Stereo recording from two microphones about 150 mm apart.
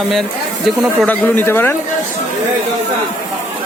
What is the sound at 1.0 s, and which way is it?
Speech, 10° left (ahead or behind).